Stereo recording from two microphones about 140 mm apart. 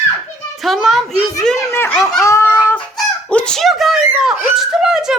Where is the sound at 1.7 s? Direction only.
15° left (ahead or behind).